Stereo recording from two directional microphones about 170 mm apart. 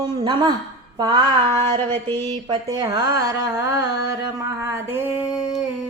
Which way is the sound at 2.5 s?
20° right (ahead or behind).